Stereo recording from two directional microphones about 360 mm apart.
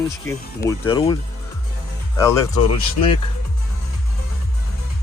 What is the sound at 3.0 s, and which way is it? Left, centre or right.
Speech, left.